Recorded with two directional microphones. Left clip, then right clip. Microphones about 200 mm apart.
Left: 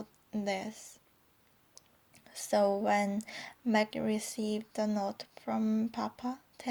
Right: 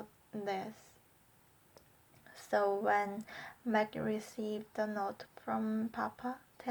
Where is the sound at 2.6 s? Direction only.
30° left (ahead or behind).